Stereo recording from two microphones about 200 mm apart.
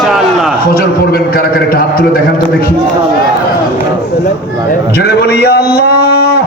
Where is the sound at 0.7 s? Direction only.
50° left (ahead or behind).